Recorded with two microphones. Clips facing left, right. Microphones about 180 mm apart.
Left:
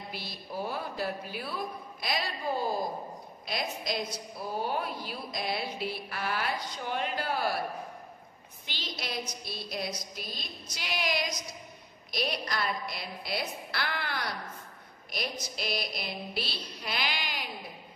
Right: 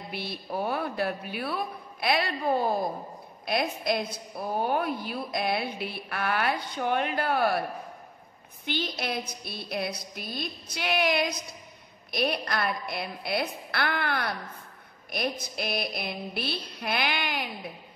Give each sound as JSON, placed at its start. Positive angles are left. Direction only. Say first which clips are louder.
{"t": 0.1, "sound": "a woman's voice", "louder": "right 8 dB", "side_deg": -60}
{"t": 8.6, "sound": "a woman's voice", "louder": "right 8 dB", "side_deg": -55}